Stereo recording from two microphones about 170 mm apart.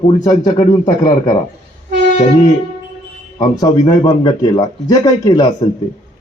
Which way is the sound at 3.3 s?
20° left (ahead or behind).